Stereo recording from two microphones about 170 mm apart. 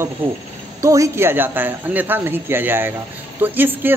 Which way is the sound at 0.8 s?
20° right (ahead or behind).